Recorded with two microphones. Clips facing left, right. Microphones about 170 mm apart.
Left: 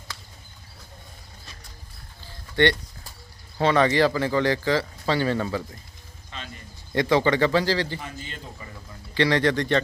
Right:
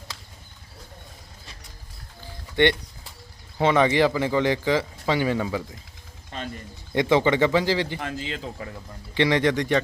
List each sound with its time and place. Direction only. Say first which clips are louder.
2.2 s a sound: right 1 dB; 15° right (ahead or behind)
3.6 s speech: even; 15° right (ahead or behind)
6.3 s a sound: right 6 dB; 45° right (ahead or behind)
6.9 s speech: right 1 dB; 20° right (ahead or behind)
7.9 s speech: right 6 dB; 85° right
9.1 s speech: even; 20° right (ahead or behind)